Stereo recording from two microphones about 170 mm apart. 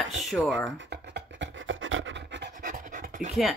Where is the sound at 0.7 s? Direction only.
85° right.